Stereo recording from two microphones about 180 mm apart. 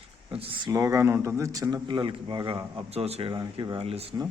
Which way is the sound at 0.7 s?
15° right (ahead or behind).